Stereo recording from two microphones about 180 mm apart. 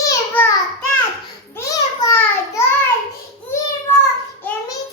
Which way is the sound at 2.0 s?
15° left (ahead or behind).